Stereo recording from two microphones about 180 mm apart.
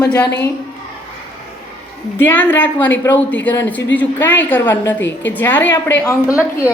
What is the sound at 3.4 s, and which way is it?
Speech, 90° left.